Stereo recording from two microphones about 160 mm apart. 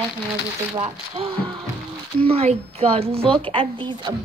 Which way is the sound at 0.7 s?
35° right (ahead or behind).